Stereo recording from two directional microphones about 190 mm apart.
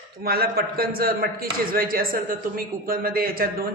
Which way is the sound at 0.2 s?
55° right (ahead or behind).